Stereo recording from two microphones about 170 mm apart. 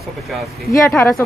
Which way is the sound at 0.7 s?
15° left (ahead or behind).